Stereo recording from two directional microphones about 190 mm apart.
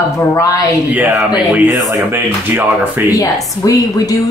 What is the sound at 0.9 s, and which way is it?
Speech, 10° right (ahead or behind).